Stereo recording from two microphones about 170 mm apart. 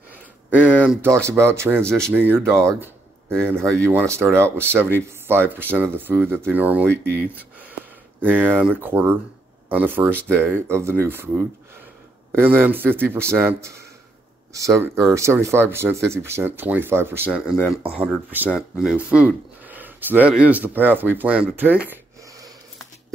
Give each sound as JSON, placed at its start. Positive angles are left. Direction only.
{"t": 0.1, "sound": "speech", "side_deg": -10}
{"t": 12.3, "sound": "speech", "side_deg": -10}
{"t": 17.5, "sound": "speech", "side_deg": 0}